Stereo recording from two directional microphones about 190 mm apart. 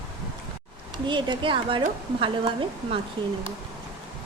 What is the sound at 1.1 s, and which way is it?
A woman's voice, 25° right (ahead or behind).